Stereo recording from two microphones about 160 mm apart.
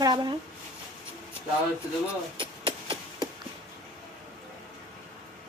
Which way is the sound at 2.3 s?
30° right (ahead or behind).